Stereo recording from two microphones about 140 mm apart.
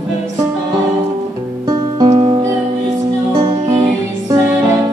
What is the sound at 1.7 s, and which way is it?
Music, 30° right (ahead or behind).